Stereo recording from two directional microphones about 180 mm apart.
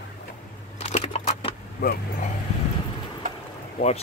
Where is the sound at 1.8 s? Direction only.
60° left (ahead or behind).